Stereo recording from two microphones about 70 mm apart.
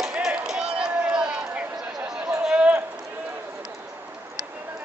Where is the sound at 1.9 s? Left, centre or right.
Centre.